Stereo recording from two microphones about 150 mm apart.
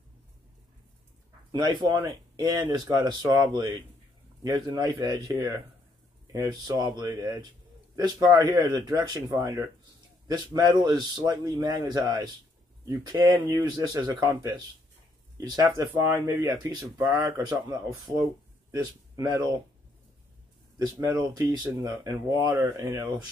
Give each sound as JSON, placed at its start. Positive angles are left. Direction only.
{"t": 1.5, "sound": "speech", "side_deg": -30}
{"t": 21.4, "sound": "speech", "side_deg": -25}